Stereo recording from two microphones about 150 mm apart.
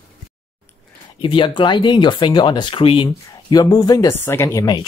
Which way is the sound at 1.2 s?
35° left (ahead or behind).